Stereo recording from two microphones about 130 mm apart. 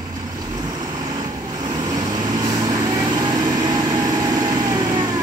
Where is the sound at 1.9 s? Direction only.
35° right (ahead or behind).